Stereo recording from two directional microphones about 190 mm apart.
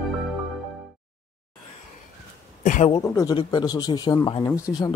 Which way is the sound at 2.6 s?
40° left (ahead or behind).